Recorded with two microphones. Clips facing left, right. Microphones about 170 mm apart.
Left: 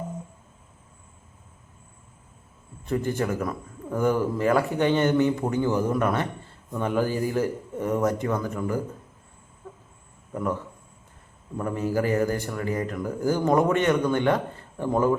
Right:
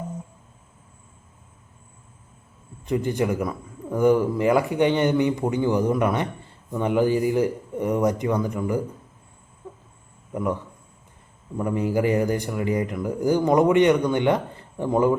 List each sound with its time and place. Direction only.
2.8 s speech: 15° right (ahead or behind)
11.5 s speech: 15° right (ahead or behind)